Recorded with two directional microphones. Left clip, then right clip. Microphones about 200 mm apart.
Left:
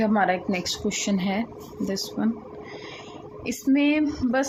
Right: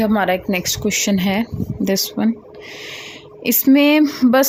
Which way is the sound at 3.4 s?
60° right (ahead or behind).